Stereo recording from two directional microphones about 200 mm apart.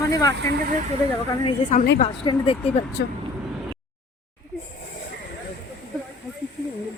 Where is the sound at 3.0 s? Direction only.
55° left (ahead or behind).